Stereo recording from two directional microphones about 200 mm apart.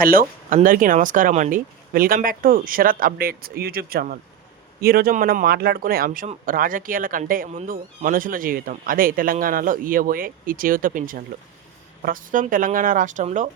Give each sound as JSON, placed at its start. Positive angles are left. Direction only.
{"t": 0.0, "sound": "speech", "side_deg": -45}